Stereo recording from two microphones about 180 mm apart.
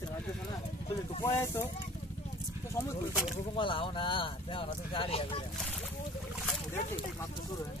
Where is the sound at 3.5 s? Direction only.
30° left (ahead or behind).